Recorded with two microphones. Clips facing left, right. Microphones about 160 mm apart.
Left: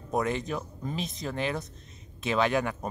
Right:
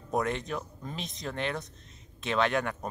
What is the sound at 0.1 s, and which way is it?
Speech, centre (ahead or behind).